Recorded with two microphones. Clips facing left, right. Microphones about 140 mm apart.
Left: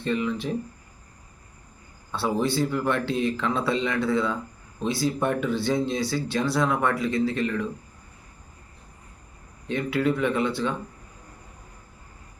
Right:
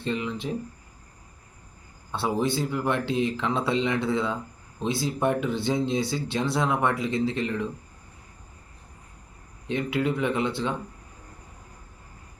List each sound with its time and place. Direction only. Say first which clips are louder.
0.0 s speech: left 3 dB; 20° right (ahead or behind)
2.1 s speech: left 1 dB; 20° right (ahead or behind)
9.6 s speech: left 2 dB; 20° right (ahead or behind)